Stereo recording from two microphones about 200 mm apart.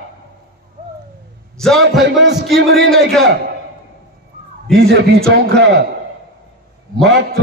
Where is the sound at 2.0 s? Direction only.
55° right (ahead or behind).